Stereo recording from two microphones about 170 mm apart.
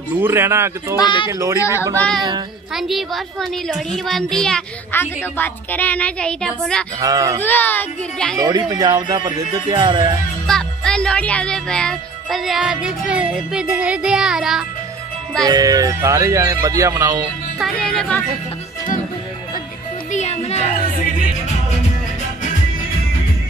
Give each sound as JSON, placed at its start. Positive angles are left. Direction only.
{"t": 0.2, "sound": "speech", "side_deg": -15}
{"t": 0.9, "sound": "speech", "side_deg": 30}
{"t": 2.0, "sound": "a child's voice", "side_deg": 5}
{"t": 7.0, "sound": "speech", "side_deg": -20}
{"t": 7.4, "sound": "a child's voice", "side_deg": 10}
{"t": 8.4, "sound": "speech", "side_deg": -25}
{"t": 10.4, "sound": "a child's voice", "side_deg": 5}
{"t": 15.4, "sound": "speech", "side_deg": -20}
{"t": 17.6, "sound": "a child's voice", "side_deg": 5}
{"t": 20.1, "sound": "music", "side_deg": 40}